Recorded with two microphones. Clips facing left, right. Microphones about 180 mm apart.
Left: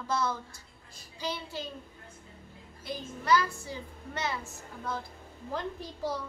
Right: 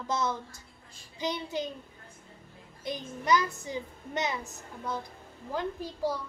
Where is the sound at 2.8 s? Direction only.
20° right (ahead or behind).